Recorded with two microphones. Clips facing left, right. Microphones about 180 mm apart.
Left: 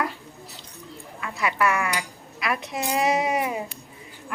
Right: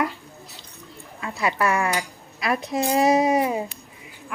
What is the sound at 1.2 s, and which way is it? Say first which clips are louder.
Speech: right 1 dB; 30° right (ahead or behind).